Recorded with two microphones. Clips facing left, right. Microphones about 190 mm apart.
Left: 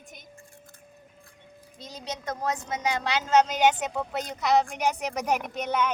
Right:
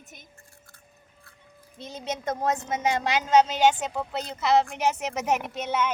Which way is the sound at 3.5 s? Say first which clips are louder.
Right 1 dB; centre (ahead or behind).